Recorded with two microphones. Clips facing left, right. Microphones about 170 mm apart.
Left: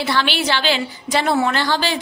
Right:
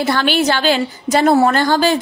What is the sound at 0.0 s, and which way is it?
A woman's voice, 45° right (ahead or behind).